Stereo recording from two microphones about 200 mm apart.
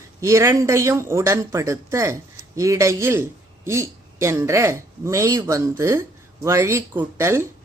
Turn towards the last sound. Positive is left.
turn(degrees=-10)  # may be behind; listen again after turning